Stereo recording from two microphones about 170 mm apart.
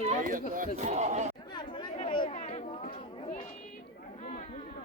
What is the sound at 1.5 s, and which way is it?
Chatter, 25° left (ahead or behind).